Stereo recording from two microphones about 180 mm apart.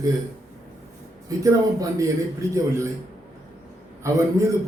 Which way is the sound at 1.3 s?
20° right (ahead or behind).